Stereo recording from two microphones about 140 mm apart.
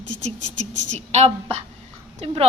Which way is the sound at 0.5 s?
60° right (ahead or behind).